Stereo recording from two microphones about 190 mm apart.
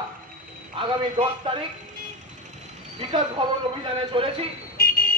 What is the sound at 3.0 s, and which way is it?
Speech, 30° right (ahead or behind).